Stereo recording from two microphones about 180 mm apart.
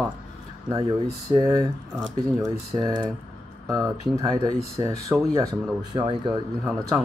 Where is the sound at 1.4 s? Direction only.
20° right (ahead or behind).